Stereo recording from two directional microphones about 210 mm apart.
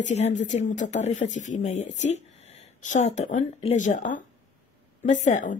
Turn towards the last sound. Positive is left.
turn(degrees=35)  # may be behind; listen again after turning